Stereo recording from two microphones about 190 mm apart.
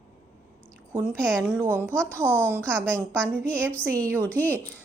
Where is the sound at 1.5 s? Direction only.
10° right (ahead or behind).